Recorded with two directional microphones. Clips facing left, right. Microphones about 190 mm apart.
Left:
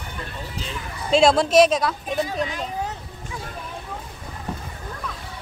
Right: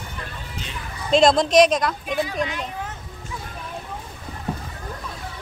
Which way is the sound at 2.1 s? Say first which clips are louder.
Even; 40° left (ahead or behind).